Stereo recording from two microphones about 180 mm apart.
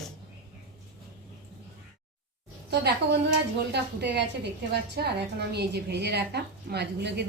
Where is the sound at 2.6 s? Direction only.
70° right (ahead or behind).